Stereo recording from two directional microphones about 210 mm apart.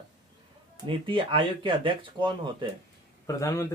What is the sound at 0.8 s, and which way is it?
Speech, 25° right (ahead or behind).